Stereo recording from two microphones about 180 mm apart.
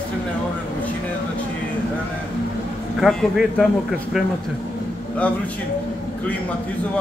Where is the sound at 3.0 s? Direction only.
Centre (ahead or behind).